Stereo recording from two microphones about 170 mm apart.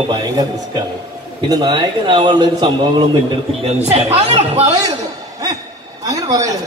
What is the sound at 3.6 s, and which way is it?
A man's voice, 40° right (ahead or behind).